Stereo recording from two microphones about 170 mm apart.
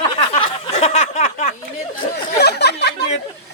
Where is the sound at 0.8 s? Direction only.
40° left (ahead or behind).